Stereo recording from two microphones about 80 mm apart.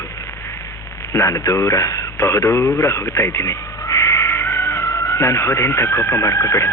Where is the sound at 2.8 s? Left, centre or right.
Left.